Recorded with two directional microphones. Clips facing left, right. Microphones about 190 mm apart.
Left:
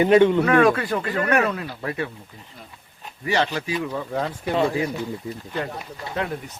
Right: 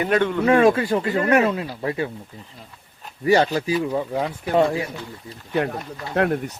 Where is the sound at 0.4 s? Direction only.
25° right (ahead or behind).